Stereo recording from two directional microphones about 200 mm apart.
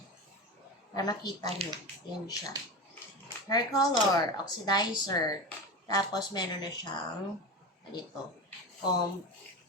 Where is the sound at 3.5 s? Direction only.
20° left (ahead or behind).